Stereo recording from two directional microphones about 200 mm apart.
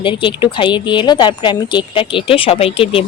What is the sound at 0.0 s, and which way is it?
Speech, 25° left (ahead or behind).